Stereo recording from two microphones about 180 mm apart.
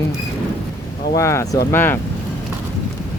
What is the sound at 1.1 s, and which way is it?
Speech, 15° left (ahead or behind).